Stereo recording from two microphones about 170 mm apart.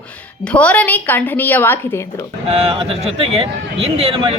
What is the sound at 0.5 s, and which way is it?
A woman's voice, 10° left (ahead or behind).